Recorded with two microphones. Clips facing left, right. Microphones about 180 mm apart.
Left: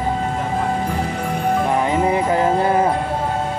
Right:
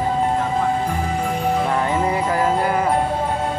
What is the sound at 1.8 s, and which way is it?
Music, 20° left (ahead or behind).